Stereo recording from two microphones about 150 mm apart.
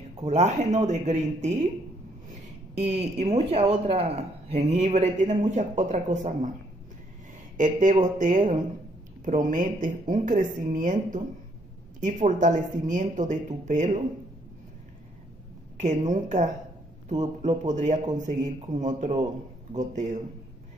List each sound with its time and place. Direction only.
0.2 s speech: 45° right (ahead or behind)
2.4 s a sound: 45° right (ahead or behind)
3.3 s speech: 45° right (ahead or behind)
7.5 s speech: 60° right (ahead or behind)
15.8 s speech: 55° right (ahead or behind)